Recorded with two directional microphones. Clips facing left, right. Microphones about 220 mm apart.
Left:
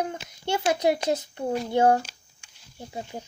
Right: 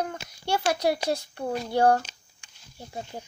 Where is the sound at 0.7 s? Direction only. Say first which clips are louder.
Left 4 dB; 20° left (ahead or behind).